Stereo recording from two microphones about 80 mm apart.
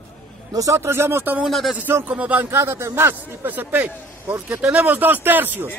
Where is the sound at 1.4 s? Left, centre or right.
Centre.